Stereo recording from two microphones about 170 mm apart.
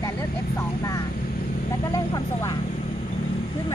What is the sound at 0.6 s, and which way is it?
Vehicle, 20° left (ahead or behind).